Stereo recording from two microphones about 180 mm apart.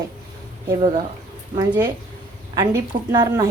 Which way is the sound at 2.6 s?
20° right (ahead or behind).